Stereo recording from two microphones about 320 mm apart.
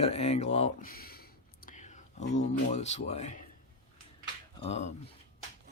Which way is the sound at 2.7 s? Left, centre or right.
Left.